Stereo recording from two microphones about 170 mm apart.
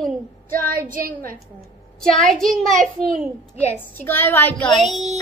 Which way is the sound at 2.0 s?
5° left (ahead or behind).